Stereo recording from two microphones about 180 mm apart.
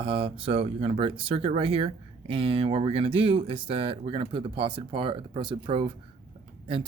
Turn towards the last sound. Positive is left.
turn(degrees=-30)  # may be behind; listen again after turning